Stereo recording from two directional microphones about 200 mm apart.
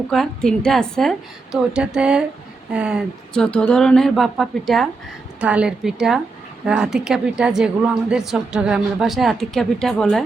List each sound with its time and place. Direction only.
0.1 s a woman's voice: centre (ahead or behind)